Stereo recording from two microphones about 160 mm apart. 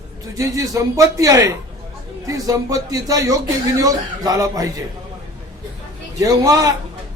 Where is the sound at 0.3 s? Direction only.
20° right (ahead or behind).